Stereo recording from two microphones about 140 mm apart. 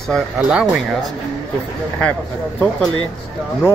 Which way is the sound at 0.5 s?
5° right (ahead or behind).